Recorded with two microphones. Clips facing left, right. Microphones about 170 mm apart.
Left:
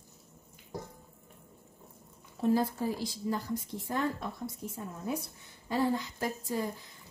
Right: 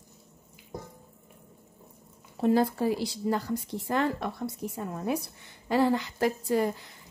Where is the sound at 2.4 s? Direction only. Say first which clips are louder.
Right 4 dB; 75° right (ahead or behind).